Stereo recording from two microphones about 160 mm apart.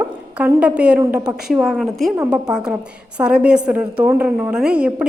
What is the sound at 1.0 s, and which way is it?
Speech, 20° right (ahead or behind).